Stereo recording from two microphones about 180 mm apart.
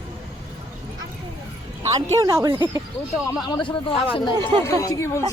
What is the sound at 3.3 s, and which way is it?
Speech, 25° left (ahead or behind).